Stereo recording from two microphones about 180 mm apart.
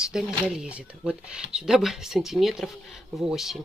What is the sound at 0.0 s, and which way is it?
Speech, 5° right (ahead or behind).